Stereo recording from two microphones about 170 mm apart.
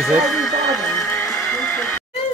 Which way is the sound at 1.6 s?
5° left (ahead or behind).